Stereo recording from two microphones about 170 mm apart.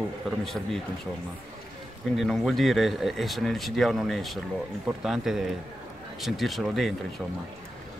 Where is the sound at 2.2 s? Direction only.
Centre (ahead or behind).